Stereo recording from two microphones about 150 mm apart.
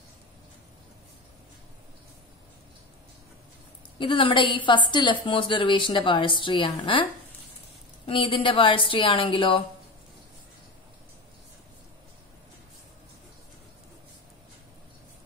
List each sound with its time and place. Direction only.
4.0 s a woman's voice: 35° left (ahead or behind)
8.1 s a woman's voice: 35° left (ahead or behind)